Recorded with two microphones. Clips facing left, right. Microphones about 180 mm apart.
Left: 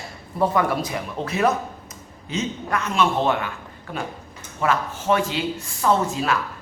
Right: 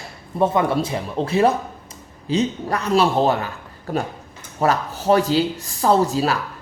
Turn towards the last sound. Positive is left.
turn(degrees=-35)  # may be behind; listen again after turning